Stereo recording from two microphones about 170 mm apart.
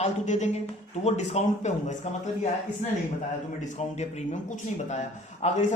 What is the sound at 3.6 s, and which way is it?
Speech, 45° left (ahead or behind).